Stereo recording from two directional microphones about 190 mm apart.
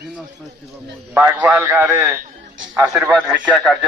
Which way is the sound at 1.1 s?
10° right (ahead or behind).